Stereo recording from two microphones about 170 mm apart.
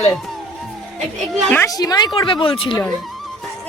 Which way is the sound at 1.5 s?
15° left (ahead or behind).